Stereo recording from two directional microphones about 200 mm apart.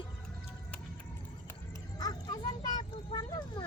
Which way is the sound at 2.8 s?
20° left (ahead or behind).